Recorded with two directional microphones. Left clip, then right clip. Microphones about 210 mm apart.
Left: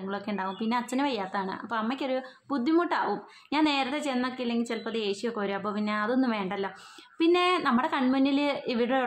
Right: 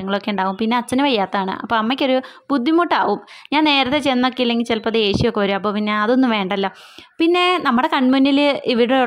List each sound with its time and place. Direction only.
0.1 s a woman's voice: 40° right (ahead or behind)